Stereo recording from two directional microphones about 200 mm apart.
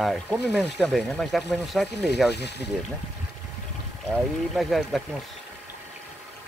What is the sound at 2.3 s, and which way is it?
Speech, 55° left (ahead or behind).